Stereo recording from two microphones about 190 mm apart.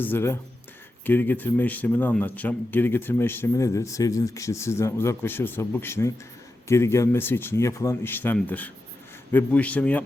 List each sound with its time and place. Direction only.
0.0 s a man's voice: 10° left (ahead or behind)